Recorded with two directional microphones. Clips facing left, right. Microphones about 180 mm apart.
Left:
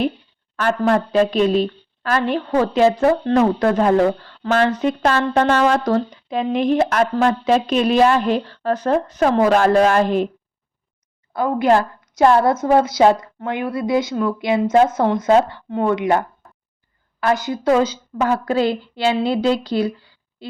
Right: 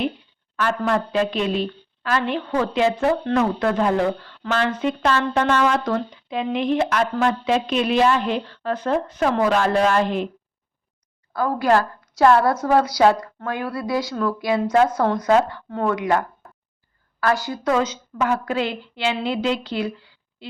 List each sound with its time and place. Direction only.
0.5 s speech: 40° left (ahead or behind)
11.3 s a woman's voice: 20° left (ahead or behind); by 20.6 s 40° left (ahead or behind)